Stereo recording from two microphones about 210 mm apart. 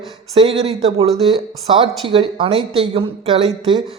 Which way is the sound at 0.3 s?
25° right (ahead or behind).